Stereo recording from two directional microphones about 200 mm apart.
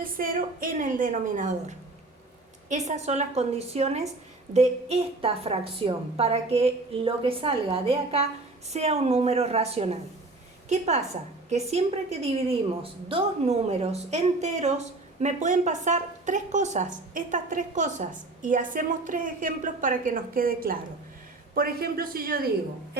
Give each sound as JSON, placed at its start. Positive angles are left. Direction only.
{"t": 0.0, "sound": "a woman's voice", "side_deg": -45}